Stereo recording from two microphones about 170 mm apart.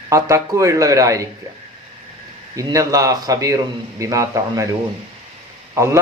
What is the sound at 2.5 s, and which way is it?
A man's voice, 20° right (ahead or behind).